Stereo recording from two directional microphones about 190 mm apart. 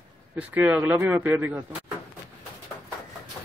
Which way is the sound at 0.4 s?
10° right (ahead or behind).